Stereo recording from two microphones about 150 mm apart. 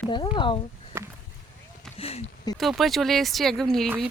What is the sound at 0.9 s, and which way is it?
Speech, 15° right (ahead or behind).